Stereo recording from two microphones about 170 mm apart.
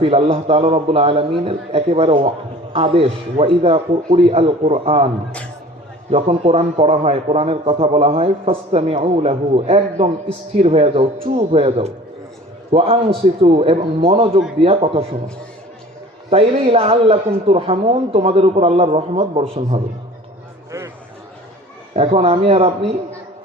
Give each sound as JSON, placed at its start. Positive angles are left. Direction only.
{"t": 0.0, "sound": "a man's voice", "side_deg": -35}
{"t": 6.1, "sound": "a man's voice", "side_deg": -40}
{"t": 16.3, "sound": "a man's voice", "side_deg": -35}
{"t": 20.7, "sound": "a sound", "side_deg": -20}
{"t": 21.9, "sound": "a man's voice", "side_deg": -35}